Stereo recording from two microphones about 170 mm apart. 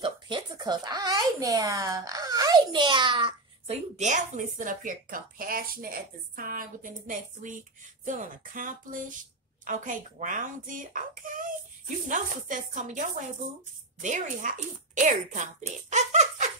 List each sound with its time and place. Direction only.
0.0 s speech: 25° right (ahead or behind); by 13.0 s 50° right (ahead or behind)
14.0 s speech: 45° right (ahead or behind)